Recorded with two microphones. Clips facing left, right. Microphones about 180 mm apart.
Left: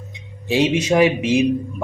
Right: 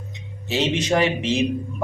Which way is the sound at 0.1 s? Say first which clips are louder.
Left 6 dB; 15° left (ahead or behind).